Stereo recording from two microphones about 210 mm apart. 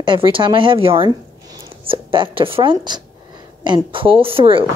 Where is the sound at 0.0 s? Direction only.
25° right (ahead or behind).